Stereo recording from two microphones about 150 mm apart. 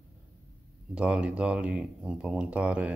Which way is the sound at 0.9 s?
5° right (ahead or behind).